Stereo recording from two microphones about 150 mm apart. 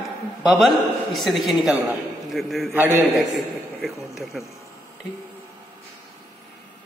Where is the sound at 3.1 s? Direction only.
Centre (ahead or behind).